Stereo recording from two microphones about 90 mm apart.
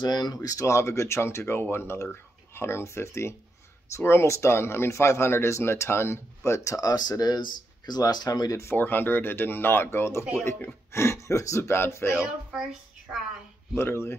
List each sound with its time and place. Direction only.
0.0 s speech: 50° left (ahead or behind)
8.6 s speech: 20° left (ahead or behind)
13.7 s speech: 25° left (ahead or behind)